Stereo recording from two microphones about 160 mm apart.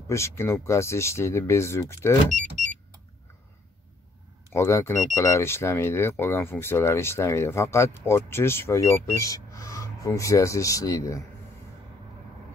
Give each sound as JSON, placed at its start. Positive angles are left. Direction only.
{"t": 0.1, "sound": "speech", "side_deg": 15}
{"t": 2.2, "sound": "speech", "side_deg": -50}
{"t": 4.5, "sound": "speech", "side_deg": 15}